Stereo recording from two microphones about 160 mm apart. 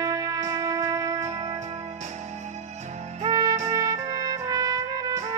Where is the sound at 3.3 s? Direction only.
25° right (ahead or behind).